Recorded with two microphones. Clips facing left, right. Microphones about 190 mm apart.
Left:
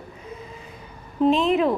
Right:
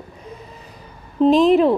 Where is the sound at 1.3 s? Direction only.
35° right (ahead or behind).